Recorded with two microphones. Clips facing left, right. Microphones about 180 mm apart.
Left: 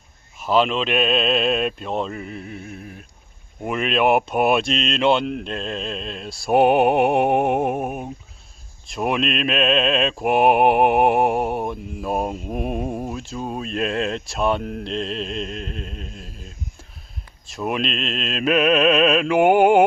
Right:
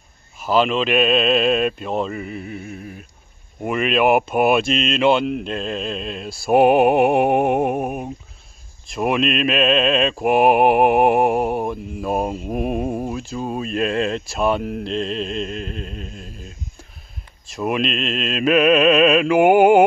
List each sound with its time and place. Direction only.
0.4 s mantra: centre (ahead or behind)